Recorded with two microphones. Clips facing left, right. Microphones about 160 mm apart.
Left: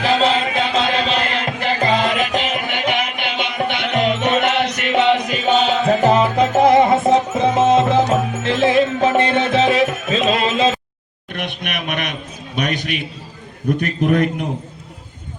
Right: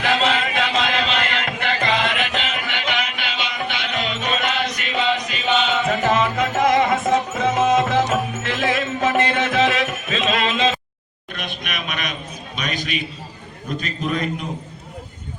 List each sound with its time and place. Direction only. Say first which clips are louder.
0.0 s music: left 4 dB; 30° left (ahead or behind); by 5.2 s 65° left (ahead or behind)
5.3 s music: left 4 dB; 40° left (ahead or behind)
11.3 s a sound: left 4 dB; 65° left (ahead or behind)